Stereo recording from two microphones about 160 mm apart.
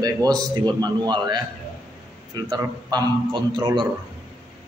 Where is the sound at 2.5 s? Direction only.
25° right (ahead or behind).